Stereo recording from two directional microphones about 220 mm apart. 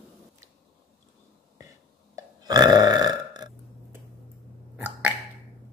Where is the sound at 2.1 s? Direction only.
15° right (ahead or behind).